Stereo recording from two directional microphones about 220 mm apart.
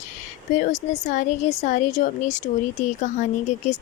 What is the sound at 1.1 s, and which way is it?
A woman's voice, 35° left (ahead or behind).